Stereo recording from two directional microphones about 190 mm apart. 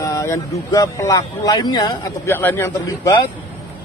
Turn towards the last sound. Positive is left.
turn(degrees=10)  # may be behind; listen again after turning